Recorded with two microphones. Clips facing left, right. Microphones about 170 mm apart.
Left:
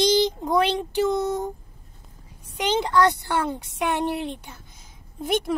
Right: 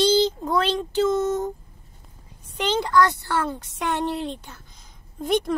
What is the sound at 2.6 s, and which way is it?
A woman's voice, 15° left (ahead or behind).